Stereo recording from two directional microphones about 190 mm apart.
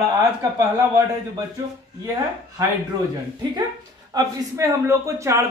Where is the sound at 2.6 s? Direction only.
15° right (ahead or behind).